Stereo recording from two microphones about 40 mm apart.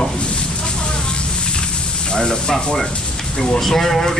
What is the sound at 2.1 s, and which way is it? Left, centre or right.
Speech, centre.